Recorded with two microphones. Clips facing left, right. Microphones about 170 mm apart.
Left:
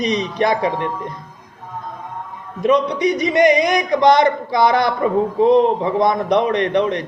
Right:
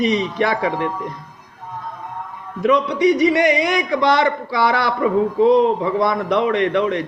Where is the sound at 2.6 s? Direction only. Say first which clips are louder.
Right 1 dB; 20° left (ahead or behind).